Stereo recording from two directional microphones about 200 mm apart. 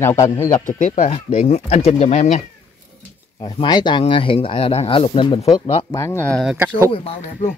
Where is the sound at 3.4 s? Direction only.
20° left (ahead or behind); by 6.9 s 5° right (ahead or behind).